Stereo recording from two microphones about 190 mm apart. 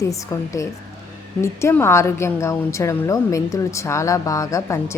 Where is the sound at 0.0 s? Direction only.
15° left (ahead or behind).